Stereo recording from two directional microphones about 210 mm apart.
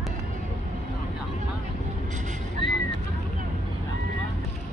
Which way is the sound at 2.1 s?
35° right (ahead or behind).